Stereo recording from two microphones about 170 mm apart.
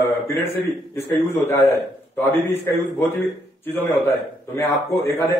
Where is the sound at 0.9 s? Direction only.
15° left (ahead or behind).